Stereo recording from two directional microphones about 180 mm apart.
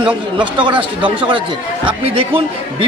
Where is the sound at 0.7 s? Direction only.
30° right (ahead or behind).